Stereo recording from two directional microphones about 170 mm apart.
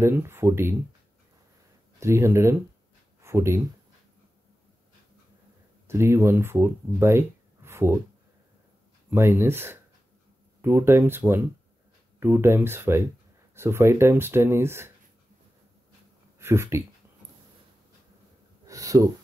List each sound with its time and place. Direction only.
0.0 s speech: 15° right (ahead or behind)
2.0 s speech: 15° right (ahead or behind)
5.9 s speech: 15° right (ahead or behind)
9.1 s speech: 15° right (ahead or behind)
16.3 s speech: 15° right (ahead or behind)
18.7 s speech: 20° right (ahead or behind)